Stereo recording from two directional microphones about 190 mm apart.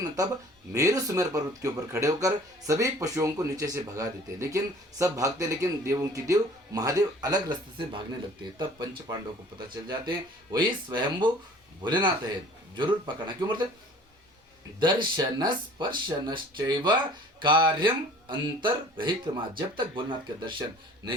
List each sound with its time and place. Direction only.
0.7 s speech: 15° right (ahead or behind)
8.5 s speech: 25° right (ahead or behind)
14.8 s speech: 25° right (ahead or behind)